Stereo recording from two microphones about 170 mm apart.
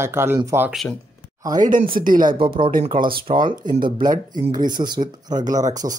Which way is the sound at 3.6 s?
50° right (ahead or behind).